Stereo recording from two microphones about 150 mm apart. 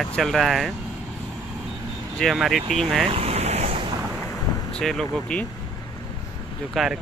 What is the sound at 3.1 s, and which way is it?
Waves, 40° right (ahead or behind).